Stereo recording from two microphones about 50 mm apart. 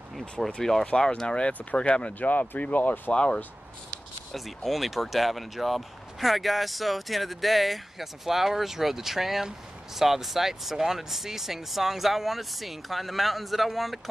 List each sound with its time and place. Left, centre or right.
0.6 s speech: centre
1.5 s speech: left
2.1 s speech: left
3.1 s speech: left
4.3 s speech: centre